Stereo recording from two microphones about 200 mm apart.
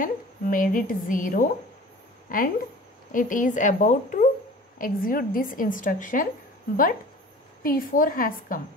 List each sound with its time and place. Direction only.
0.0 s a woman's voice: 45° left (ahead or behind)
7.6 s a woman's voice: 45° left (ahead or behind)